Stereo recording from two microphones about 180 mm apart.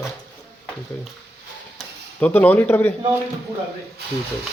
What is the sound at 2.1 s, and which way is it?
Speech, 10° left (ahead or behind).